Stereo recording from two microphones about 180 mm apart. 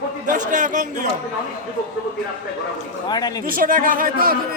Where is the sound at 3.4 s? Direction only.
50° right (ahead or behind).